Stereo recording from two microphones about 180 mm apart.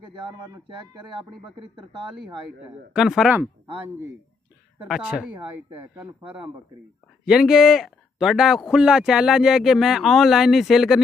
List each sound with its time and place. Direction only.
0.3 s speech: 25° right (ahead or behind)
2.9 s speech: centre (ahead or behind)
4.8 s speech: 5° right (ahead or behind)